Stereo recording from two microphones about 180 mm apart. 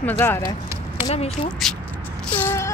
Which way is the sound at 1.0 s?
35° left (ahead or behind).